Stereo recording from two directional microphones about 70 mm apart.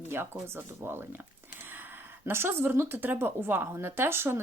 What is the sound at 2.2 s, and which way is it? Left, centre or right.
A woman's voice, right.